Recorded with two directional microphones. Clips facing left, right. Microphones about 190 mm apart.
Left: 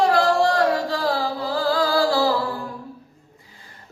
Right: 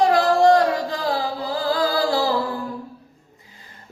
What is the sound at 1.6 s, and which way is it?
Music, 20° right (ahead or behind).